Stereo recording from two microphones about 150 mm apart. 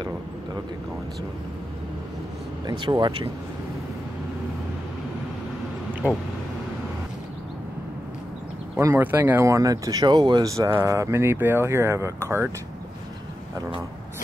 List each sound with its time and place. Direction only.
2.6 s speech: 25° right (ahead or behind)
8.7 s speech: 15° right (ahead or behind)